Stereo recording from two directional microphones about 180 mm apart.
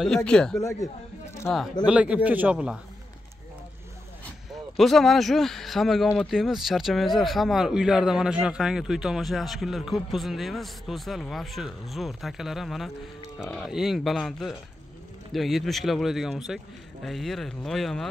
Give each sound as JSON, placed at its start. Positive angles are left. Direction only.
{"t": 0.0, "sound": "speech", "side_deg": 5}
{"t": 0.6, "sound": "speech", "side_deg": 20}
{"t": 1.5, "sound": "speech", "side_deg": 5}
{"t": 1.9, "sound": "a man's voice", "side_deg": -5}
{"t": 4.5, "sound": "speech", "side_deg": 0}